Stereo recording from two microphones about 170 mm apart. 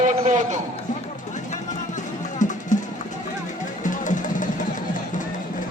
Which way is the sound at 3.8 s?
50° left (ahead or behind).